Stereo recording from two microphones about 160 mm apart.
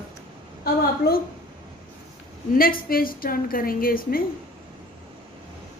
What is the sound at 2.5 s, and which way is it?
A woman's voice, 65° left (ahead or behind).